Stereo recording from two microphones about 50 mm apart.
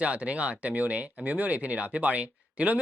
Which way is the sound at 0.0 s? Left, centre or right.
Right.